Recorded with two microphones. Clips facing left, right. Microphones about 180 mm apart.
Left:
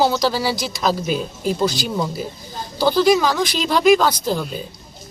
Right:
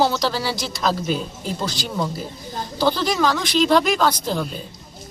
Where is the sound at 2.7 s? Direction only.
10° left (ahead or behind).